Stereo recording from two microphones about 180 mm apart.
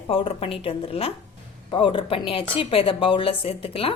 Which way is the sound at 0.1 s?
30° left (ahead or behind).